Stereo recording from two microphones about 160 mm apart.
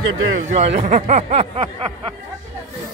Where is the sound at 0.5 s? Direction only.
40° right (ahead or behind).